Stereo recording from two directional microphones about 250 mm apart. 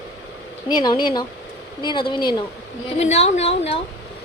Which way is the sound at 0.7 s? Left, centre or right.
Centre.